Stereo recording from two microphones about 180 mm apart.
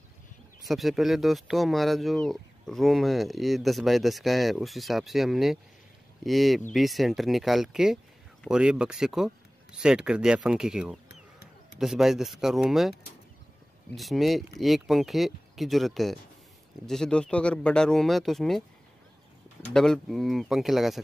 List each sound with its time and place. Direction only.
0.6 s speech: centre (ahead or behind)
11.1 s a sound: 65° left (ahead or behind)
11.8 s speech: centre (ahead or behind)
13.9 s speech: centre (ahead or behind)
19.7 s speech: 5° left (ahead or behind)